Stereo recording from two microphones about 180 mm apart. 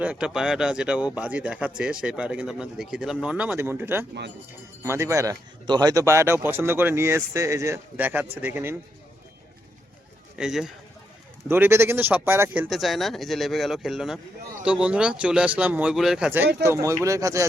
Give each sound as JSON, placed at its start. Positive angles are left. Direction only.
{"t": 0.0, "sound": "speech", "side_deg": -5}
{"t": 10.3, "sound": "speech", "side_deg": -5}
{"t": 12.6, "sound": "speech", "side_deg": 0}